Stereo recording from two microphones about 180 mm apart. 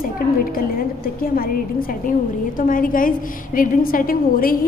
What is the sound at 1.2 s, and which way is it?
Speech, 55° left (ahead or behind).